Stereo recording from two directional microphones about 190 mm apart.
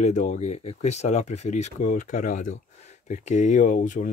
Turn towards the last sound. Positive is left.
turn(degrees=40)  # may be behind; listen again after turning